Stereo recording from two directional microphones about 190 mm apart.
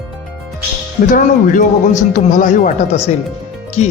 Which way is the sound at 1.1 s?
45° left (ahead or behind).